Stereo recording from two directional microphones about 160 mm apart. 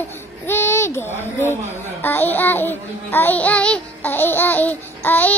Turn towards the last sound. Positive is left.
turn(degrees=10)  # may be behind; listen again after turning